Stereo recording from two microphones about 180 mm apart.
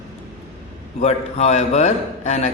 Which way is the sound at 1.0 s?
40° left (ahead or behind).